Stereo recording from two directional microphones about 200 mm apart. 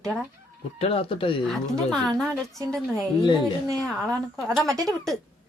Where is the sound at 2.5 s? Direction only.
15° right (ahead or behind).